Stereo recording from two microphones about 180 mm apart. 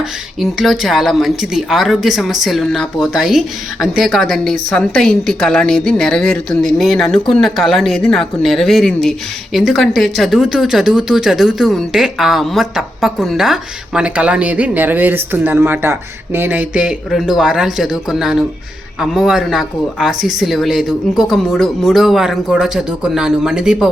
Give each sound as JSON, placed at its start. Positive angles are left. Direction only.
{"t": 0.3, "sound": "speech", "side_deg": 0}